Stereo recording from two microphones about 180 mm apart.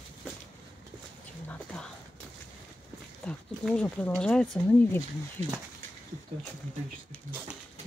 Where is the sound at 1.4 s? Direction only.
5° left (ahead or behind).